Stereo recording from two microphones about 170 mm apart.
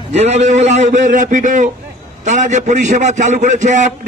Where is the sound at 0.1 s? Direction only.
40° right (ahead or behind).